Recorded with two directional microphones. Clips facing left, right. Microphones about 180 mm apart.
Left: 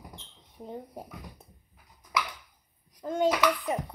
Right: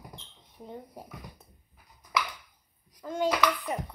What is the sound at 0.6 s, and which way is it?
Speech, 20° left (ahead or behind).